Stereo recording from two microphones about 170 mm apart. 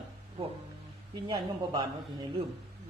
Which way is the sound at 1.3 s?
20° right (ahead or behind).